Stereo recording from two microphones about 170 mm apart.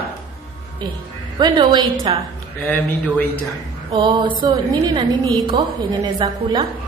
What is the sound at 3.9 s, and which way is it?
A woman's voice, 30° right (ahead or behind).